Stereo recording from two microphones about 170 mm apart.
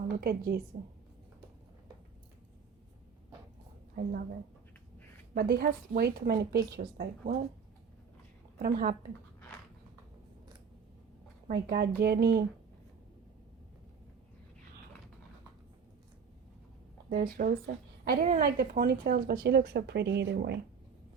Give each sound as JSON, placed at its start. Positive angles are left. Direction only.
{"t": 0.2, "sound": "a woman's voice", "side_deg": -60}
{"t": 3.9, "sound": "a woman's voice", "side_deg": -55}
{"t": 5.3, "sound": "a woman's voice", "side_deg": -60}
{"t": 8.5, "sound": "a woman's voice", "side_deg": -55}
{"t": 11.7, "sound": "speech", "side_deg": -70}
{"t": 17.1, "sound": "a woman's voice", "side_deg": -60}